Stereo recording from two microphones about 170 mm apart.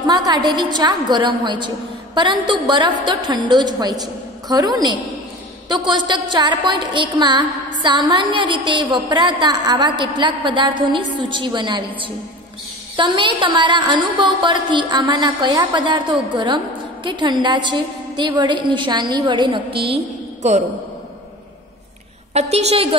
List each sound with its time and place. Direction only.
0.0 s a woman's voice: 25° right (ahead or behind)
22.3 s a woman's voice: 40° right (ahead or behind)